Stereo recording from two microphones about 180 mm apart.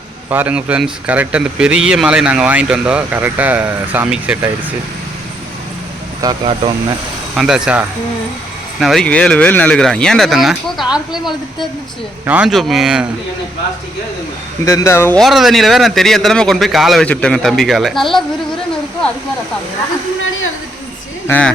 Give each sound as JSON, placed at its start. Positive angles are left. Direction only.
{"t": 0.3, "sound": "speech", "side_deg": -10}
{"t": 6.2, "sound": "speech", "side_deg": -30}
{"t": 7.3, "sound": "a man's voice", "side_deg": -5}
{"t": 14.6, "sound": "speech", "side_deg": 15}
{"t": 15.2, "sound": "a man's voice", "side_deg": 0}
{"t": 21.2, "sound": "speech", "side_deg": 10}